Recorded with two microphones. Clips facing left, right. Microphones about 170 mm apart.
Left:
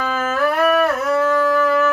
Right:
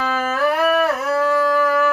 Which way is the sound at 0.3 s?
10° right (ahead or behind).